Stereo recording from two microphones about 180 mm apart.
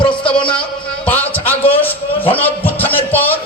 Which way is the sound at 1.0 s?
10° left (ahead or behind).